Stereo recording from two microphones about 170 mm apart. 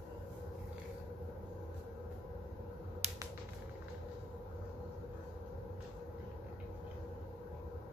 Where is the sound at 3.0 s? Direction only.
40° right (ahead or behind).